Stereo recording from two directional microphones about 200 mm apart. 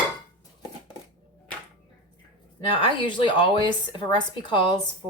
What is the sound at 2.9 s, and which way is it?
A woman's voice, 25° left (ahead or behind).